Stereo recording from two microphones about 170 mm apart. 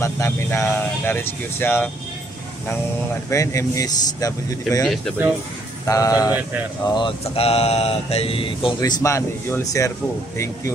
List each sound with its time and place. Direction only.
0.0 s speech: 15° left (ahead or behind)
3.3 s speech: 20° left (ahead or behind)
4.8 s speech: centre (ahead or behind)
5.9 s speech: 20° left (ahead or behind)
6.8 s a sound: 25° left (ahead or behind)
9.0 s speech: 20° left (ahead or behind)